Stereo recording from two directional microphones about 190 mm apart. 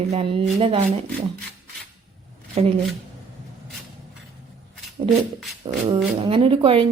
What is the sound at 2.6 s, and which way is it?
Speech, 35° right (ahead or behind).